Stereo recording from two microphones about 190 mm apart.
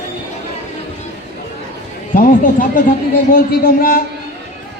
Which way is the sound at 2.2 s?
45° left (ahead or behind).